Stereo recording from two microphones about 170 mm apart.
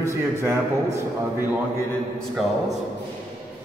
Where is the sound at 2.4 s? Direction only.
Centre (ahead or behind).